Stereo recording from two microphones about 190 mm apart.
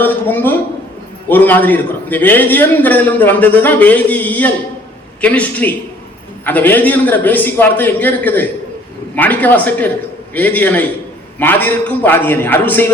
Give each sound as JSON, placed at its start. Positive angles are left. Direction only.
{"t": 0.0, "sound": "a man's voice", "side_deg": 10}